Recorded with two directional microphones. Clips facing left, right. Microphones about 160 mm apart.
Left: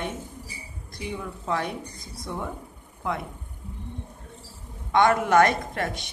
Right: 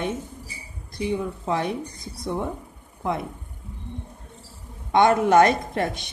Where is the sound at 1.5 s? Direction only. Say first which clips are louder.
Right 2 dB; 20° right (ahead or behind).